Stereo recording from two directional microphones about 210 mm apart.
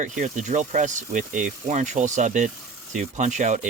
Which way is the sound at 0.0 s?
35° right (ahead or behind).